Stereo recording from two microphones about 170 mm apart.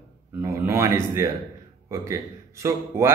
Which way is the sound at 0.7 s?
15° right (ahead or behind).